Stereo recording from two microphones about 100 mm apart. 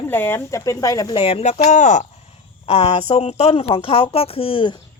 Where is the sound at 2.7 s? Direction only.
80° left; by 4.7 s 60° left (ahead or behind).